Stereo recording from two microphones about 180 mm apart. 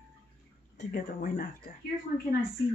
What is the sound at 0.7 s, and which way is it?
Speech, 50° left (ahead or behind).